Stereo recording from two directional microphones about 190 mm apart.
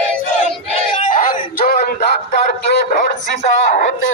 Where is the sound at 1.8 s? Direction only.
55° left (ahead or behind).